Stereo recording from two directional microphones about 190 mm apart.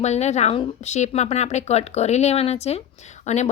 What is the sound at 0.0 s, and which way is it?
A woman's voice, 35° left (ahead or behind).